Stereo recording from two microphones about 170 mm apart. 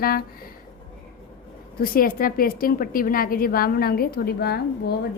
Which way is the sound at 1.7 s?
60° left (ahead or behind).